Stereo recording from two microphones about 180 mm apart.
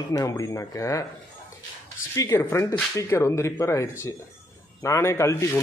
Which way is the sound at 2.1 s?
15° left (ahead or behind).